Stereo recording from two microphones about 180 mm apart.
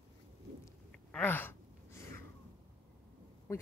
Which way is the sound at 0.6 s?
10° left (ahead or behind).